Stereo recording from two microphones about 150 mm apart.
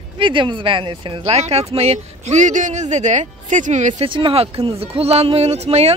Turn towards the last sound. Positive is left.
turn(degrees=-45)  # may be behind; listen again after turning